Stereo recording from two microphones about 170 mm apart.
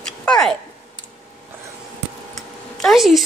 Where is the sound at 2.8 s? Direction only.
Centre (ahead or behind).